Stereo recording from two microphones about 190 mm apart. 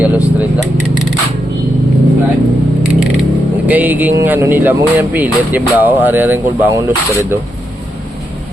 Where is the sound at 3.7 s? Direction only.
10° right (ahead or behind).